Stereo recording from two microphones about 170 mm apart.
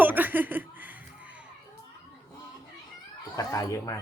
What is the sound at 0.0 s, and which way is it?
Chuckle, 10° right (ahead or behind).